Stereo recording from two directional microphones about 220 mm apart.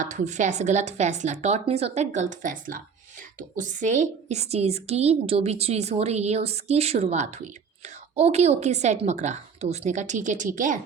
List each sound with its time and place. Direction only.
0.0 s a woman's voice: 35° right (ahead or behind)